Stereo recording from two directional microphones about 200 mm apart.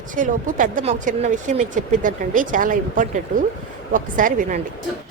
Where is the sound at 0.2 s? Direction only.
40° right (ahead or behind).